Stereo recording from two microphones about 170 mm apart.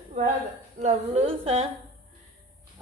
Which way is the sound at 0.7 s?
40° right (ahead or behind).